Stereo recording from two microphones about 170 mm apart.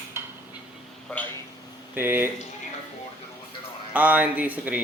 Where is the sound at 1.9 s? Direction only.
10° right (ahead or behind).